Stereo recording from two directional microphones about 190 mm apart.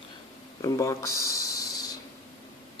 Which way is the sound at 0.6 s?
15° left (ahead or behind).